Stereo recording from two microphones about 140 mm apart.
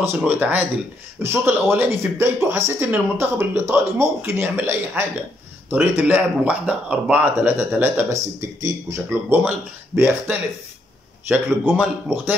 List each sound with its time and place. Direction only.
0.0 s speech: 15° right (ahead or behind)